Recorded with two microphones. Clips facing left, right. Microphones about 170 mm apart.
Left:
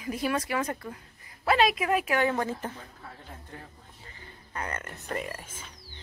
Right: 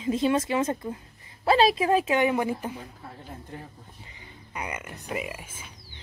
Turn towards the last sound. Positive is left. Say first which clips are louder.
# right 1 dB
turn(degrees=-10)  # may be behind; listen again after turning